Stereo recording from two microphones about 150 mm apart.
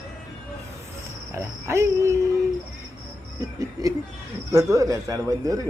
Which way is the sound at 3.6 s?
25° right (ahead or behind).